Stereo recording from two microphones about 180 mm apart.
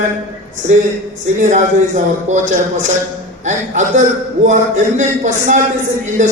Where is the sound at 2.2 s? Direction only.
45° right (ahead or behind).